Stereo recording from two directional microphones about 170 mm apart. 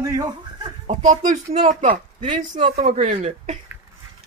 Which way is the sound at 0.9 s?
45° right (ahead or behind).